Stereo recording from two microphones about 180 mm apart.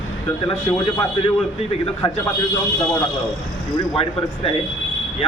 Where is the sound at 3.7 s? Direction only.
30° left (ahead or behind).